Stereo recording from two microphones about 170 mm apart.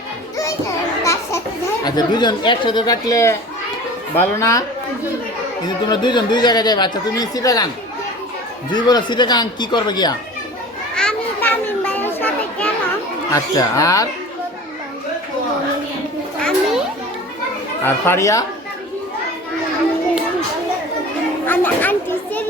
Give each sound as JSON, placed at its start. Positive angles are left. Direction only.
{"t": 1.0, "sound": "a sound", "side_deg": 15}
{"t": 1.8, "sound": "speech", "side_deg": 25}
{"t": 5.6, "sound": "speech", "side_deg": 25}
{"t": 8.7, "sound": "speech", "side_deg": 25}
{"t": 10.9, "sound": "children playing", "side_deg": 10}
{"t": 13.3, "sound": "speech", "side_deg": 20}
{"t": 17.8, "sound": "speech", "side_deg": 15}
{"t": 21.4, "sound": "chatter", "side_deg": 10}